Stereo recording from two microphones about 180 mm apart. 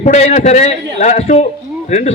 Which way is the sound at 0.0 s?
40° left (ahead or behind).